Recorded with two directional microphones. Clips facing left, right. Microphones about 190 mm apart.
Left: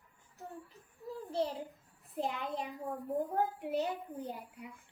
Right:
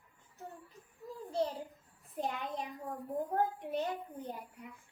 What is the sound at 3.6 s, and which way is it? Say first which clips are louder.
Speech: left 2 dB; 10° left (ahead or behind).